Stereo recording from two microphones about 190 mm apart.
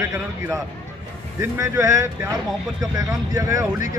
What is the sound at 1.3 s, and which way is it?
Speech, 15° right (ahead or behind).